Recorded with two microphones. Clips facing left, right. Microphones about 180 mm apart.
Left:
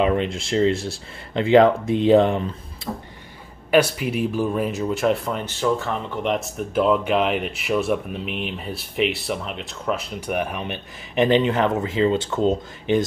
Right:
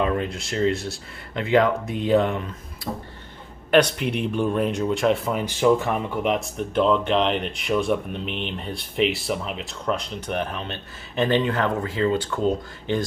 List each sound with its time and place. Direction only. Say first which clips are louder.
0.0 s speech: left 3 dB; 25° left (ahead or behind)
3.7 s speech: even; 5° left (ahead or behind)
5.4 s speech: right 4 dB; 15° right (ahead or behind)
6.2 s speech: even; centre (ahead or behind); by 13.0 s 20° left (ahead or behind)